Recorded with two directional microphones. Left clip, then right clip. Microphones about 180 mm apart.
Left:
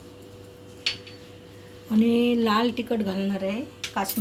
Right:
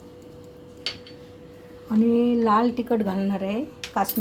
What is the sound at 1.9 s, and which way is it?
Speech, 5° right (ahead or behind).